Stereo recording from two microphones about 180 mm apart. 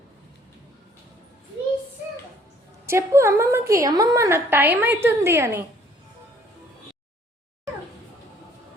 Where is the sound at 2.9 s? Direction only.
15° right (ahead or behind).